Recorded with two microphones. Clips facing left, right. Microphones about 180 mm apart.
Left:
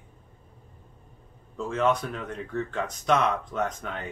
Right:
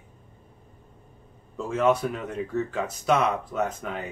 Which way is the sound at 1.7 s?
5° right (ahead or behind).